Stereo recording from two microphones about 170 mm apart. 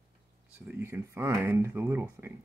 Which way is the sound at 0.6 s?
15° right (ahead or behind).